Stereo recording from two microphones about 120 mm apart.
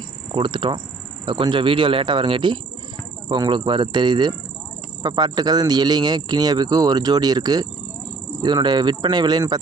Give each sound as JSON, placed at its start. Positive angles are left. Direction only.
{"t": 0.3, "sound": "speech", "side_deg": -45}